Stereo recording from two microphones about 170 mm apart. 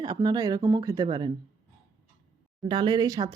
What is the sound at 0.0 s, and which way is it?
Speech, 25° right (ahead or behind).